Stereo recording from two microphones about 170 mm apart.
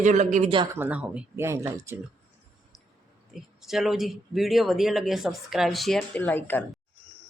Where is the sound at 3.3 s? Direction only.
Centre (ahead or behind).